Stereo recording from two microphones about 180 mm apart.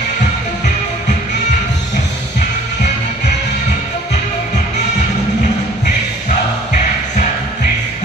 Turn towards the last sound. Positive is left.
turn(degrees=40)  # may be behind; listen again after turning